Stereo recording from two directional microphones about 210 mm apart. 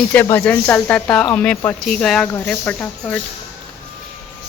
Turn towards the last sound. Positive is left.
turn(degrees=5)  # may be behind; listen again after turning